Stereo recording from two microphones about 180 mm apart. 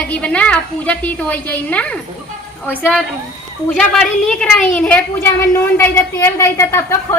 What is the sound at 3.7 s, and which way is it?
A woman's voice, 5° left (ahead or behind).